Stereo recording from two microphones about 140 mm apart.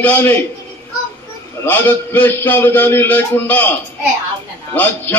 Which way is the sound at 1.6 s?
15° left (ahead or behind).